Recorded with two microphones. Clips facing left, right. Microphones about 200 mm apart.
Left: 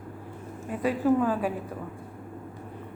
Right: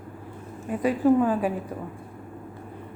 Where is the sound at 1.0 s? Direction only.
15° right (ahead or behind).